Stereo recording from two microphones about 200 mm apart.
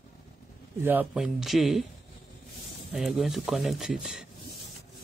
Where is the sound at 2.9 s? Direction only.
Centre (ahead or behind).